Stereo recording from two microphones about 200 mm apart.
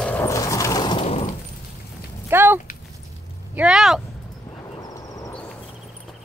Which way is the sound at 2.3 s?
10° right (ahead or behind).